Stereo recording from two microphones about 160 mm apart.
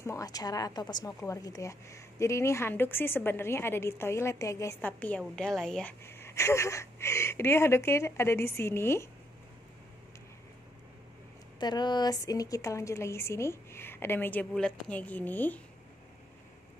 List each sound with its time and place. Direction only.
0.0 s a woman's voice: 20° left (ahead or behind); by 5.9 s 5° left (ahead or behind)
6.0 s a woman's voice: 15° left (ahead or behind)
11.6 s a woman's voice: 25° left (ahead or behind); by 15.6 s 10° left (ahead or behind)